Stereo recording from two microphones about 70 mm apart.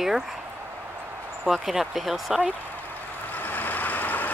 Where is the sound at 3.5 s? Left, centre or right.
Left.